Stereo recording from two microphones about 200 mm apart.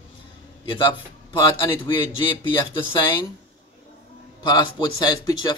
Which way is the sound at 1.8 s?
25° left (ahead or behind).